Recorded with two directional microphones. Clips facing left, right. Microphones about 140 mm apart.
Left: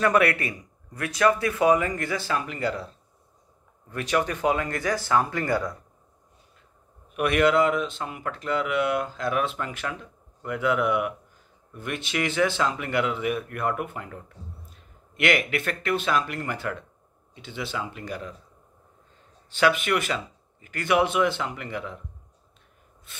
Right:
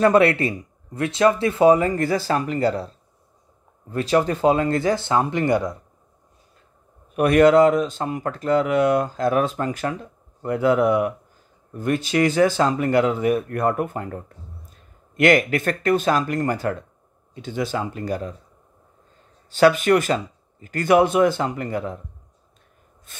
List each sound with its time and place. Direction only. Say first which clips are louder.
0.0 s speech: right 6 dB; 30° right (ahead or behind)
3.9 s speech: right 6 dB; 30° right (ahead or behind)
7.2 s speech: right 7 dB; 40° right (ahead or behind)
19.5 s speech: right 7 dB; 40° right (ahead or behind)
23.1 s snort: right 2 dB; 45° right (ahead or behind)